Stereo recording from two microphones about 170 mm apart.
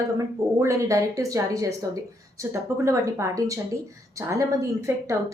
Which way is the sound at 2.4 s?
15° right (ahead or behind).